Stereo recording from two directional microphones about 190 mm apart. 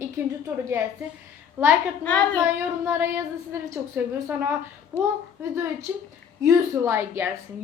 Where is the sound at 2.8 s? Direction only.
10° right (ahead or behind).